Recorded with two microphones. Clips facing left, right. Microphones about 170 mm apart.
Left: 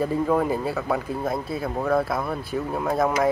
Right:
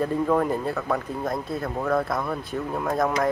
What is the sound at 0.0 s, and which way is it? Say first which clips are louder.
Speech: even; 5° left (ahead or behind).